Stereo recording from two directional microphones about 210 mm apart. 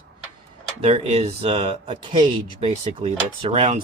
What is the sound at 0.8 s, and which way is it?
Speech, 30° right (ahead or behind).